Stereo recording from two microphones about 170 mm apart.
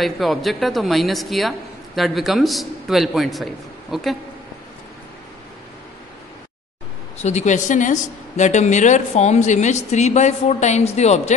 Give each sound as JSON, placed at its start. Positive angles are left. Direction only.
{"t": 0.0, "sound": "a man's voice", "side_deg": 0}
{"t": 7.2, "sound": "speech", "side_deg": 40}